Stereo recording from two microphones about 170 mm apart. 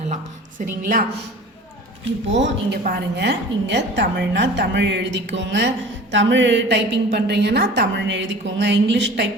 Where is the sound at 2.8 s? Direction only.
70° right (ahead or behind).